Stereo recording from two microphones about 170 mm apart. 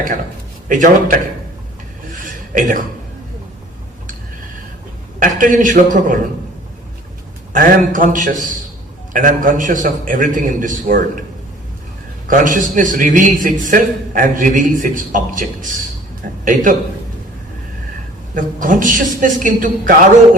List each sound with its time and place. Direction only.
0.7 s a man's voice: 50° right (ahead or behind)
2.2 s a sound: 50° right (ahead or behind)
5.4 s a man's voice: 50° right (ahead or behind)
7.5 s a man's voice: 50° right (ahead or behind)
12.3 s a man's voice: 50° right (ahead or behind)
18.3 s a man's voice: 50° right (ahead or behind)